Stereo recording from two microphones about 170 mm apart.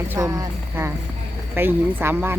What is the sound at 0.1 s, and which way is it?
Speech, 20° right (ahead or behind).